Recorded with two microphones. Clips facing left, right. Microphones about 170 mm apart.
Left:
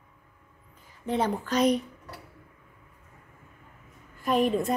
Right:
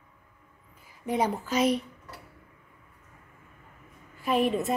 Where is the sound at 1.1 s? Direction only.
10° right (ahead or behind).